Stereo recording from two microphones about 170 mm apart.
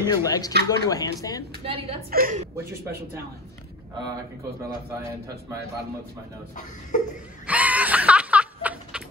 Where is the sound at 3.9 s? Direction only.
25° right (ahead or behind).